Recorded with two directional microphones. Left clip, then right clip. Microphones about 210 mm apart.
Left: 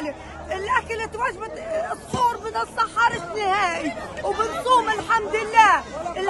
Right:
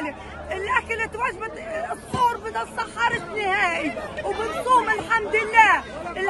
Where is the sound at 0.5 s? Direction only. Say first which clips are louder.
Left 1 dB; 15° left (ahead or behind).